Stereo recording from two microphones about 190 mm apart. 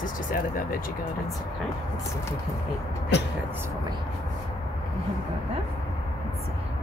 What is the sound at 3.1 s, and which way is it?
Speech, 65° left (ahead or behind).